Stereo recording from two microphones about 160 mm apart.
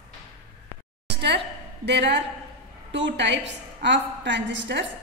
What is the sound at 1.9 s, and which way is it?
Speech, 90° right.